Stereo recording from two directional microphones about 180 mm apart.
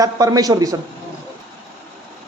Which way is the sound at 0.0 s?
20° right (ahead or behind).